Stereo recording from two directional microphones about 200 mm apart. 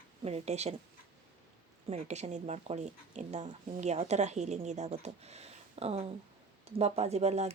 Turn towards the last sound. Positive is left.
turn(degrees=-35)  # may be behind; listen again after turning